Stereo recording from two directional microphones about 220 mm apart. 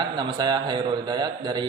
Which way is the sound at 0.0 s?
20° right (ahead or behind).